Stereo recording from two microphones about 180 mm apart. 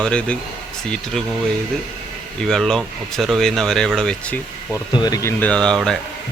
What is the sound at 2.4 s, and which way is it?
Speech, centre (ahead or behind).